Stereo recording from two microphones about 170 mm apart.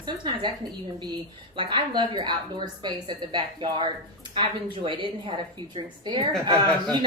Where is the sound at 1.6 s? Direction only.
25° right (ahead or behind).